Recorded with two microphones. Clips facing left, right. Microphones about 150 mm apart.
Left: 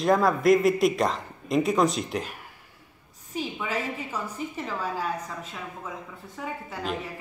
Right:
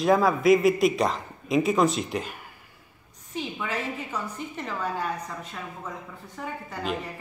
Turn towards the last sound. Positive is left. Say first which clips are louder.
# right 1 dB
turn(degrees=0)  # may be behind; listen again after turning